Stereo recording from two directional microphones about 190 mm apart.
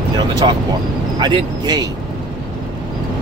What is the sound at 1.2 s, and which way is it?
Speech, 20° right (ahead or behind).